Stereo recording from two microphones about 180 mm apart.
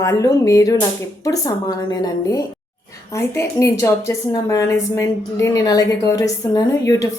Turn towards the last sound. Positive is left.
turn(degrees=15)  # may be behind; listen again after turning